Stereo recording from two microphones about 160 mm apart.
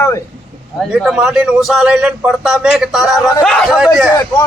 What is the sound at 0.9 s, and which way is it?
A man's voice, 5° right (ahead or behind).